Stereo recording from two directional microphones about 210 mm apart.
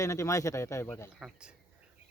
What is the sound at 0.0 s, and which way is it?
Speech, 15° left (ahead or behind).